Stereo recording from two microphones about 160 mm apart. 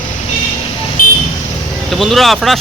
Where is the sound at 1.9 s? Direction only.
Centre (ahead or behind).